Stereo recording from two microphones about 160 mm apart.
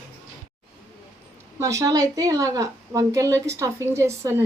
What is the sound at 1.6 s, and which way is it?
A woman's voice, 20° right (ahead or behind).